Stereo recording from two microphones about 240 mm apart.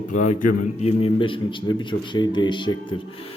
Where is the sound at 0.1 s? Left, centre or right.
Left.